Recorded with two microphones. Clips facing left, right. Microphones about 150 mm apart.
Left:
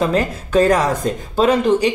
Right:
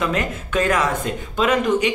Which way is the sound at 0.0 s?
35° left (ahead or behind).